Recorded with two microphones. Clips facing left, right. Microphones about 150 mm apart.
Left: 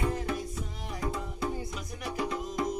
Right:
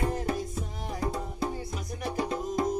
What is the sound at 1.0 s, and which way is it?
Music, 35° right (ahead or behind).